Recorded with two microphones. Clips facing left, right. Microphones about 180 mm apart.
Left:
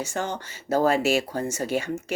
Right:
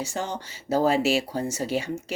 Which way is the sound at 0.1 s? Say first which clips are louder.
Left 1 dB; 55° left (ahead or behind).